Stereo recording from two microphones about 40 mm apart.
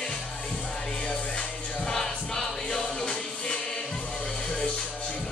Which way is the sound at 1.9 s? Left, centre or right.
Centre.